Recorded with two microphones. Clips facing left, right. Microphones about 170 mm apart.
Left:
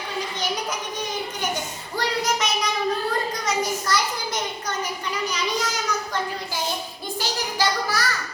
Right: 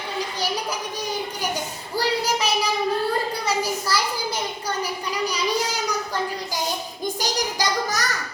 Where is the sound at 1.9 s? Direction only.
35° right (ahead or behind).